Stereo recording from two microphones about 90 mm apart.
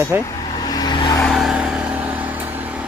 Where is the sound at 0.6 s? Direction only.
50° left (ahead or behind).